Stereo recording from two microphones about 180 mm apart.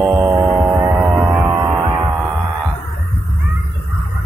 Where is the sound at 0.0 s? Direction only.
10° right (ahead or behind).